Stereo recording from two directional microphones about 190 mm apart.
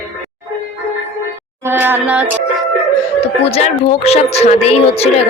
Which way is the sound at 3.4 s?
30° left (ahead or behind).